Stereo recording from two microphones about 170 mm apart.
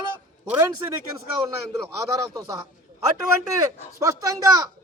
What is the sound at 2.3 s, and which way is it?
Speech, 20° right (ahead or behind).